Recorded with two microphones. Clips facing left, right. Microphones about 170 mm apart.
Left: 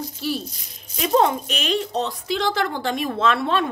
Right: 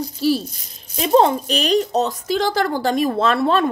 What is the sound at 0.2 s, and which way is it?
A woman's voice, 35° right (ahead or behind).